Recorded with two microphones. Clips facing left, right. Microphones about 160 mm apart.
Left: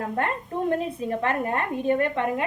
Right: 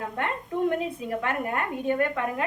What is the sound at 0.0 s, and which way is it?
A woman's voice, 35° left (ahead or behind).